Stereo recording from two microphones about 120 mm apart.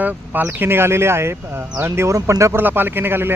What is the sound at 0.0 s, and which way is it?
Speech, 15° right (ahead or behind).